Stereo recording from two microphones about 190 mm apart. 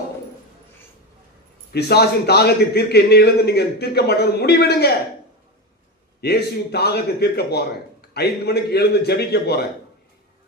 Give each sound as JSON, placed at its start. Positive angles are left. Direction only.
{"t": 1.7, "sound": "a man's voice", "side_deg": 60}
{"t": 6.2, "sound": "a man's voice", "side_deg": 60}